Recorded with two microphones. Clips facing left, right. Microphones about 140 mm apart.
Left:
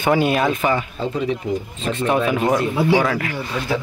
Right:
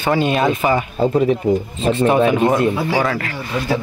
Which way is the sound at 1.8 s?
35° right (ahead or behind).